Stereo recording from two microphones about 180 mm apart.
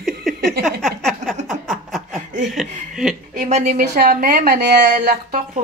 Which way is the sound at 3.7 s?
60° right (ahead or behind).